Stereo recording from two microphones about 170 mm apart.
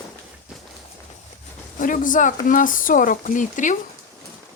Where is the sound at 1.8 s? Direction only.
50° left (ahead or behind).